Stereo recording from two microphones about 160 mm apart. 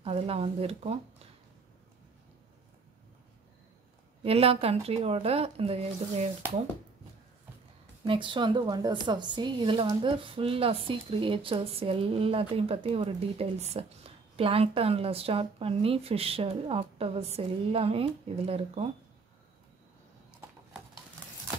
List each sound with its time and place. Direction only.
0.0 s speech: 35° right (ahead or behind)
4.2 s speech: 35° right (ahead or behind)
8.1 s speech: 30° right (ahead or behind)